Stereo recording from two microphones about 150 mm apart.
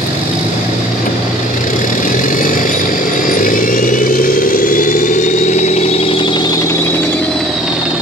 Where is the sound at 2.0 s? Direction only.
65° left (ahead or behind); by 6.8 s 25° left (ahead or behind).